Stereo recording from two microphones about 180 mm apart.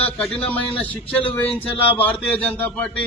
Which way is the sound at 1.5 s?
30° left (ahead or behind).